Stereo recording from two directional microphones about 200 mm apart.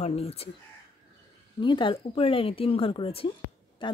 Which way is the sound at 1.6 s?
25° left (ahead or behind).